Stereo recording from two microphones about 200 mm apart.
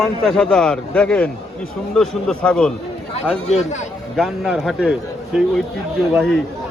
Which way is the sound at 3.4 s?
35° left (ahead or behind).